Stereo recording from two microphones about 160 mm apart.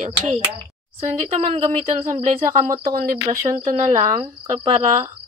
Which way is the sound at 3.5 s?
35° right (ahead or behind).